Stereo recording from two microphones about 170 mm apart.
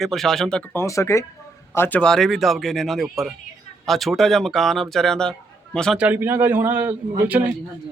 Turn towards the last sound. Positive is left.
turn(degrees=-10)  # may be behind; listen again after turning